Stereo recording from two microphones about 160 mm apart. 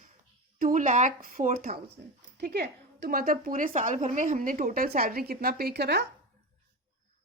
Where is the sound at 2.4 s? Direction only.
85° right.